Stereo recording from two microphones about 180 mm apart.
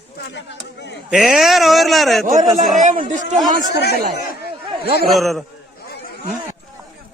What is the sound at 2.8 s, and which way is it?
Speech, 45° right (ahead or behind).